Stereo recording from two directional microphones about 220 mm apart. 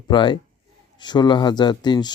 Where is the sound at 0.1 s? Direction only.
20° left (ahead or behind).